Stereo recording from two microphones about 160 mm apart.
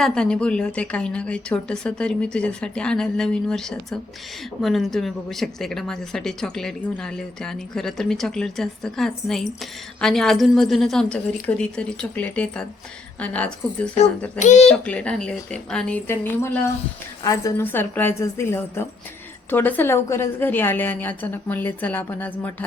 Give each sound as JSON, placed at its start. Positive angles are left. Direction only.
{"t": 0.0, "sound": "a woman's voice", "side_deg": 5}
{"t": 14.3, "sound": "speech", "side_deg": 50}
{"t": 14.7, "sound": "a woman's voice", "side_deg": 5}